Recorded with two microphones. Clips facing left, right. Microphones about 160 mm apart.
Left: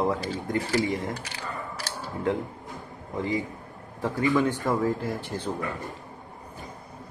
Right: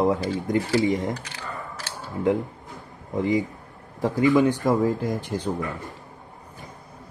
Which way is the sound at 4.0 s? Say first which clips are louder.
Right 5 dB; 15° right (ahead or behind).